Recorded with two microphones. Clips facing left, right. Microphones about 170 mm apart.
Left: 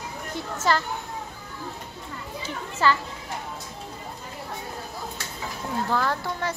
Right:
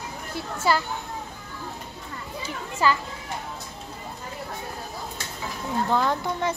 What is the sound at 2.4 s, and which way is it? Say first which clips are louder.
Speech: even; 15° right (ahead or behind).